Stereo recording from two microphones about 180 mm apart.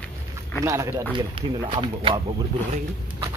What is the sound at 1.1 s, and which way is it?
Speech, 25° right (ahead or behind).